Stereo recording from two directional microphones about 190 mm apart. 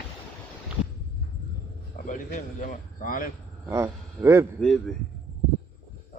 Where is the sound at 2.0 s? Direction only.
45° left (ahead or behind).